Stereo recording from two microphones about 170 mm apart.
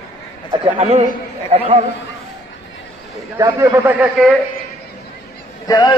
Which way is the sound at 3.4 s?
15° right (ahead or behind).